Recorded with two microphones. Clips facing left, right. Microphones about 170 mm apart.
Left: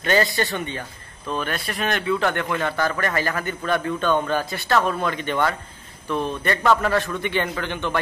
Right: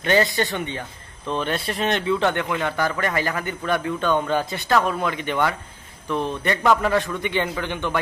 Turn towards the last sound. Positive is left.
turn(degrees=-15)  # may be behind; listen again after turning